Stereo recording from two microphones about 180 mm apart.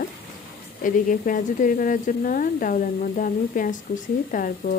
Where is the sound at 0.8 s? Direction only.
50° left (ahead or behind).